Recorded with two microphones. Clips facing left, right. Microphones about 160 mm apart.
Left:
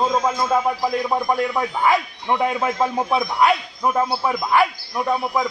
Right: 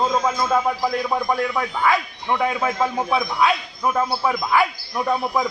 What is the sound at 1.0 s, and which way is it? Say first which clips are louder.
A man's voice: left 1 dB; 15° left (ahead or behind).